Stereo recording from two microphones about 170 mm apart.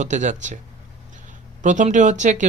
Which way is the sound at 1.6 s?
45° right (ahead or behind).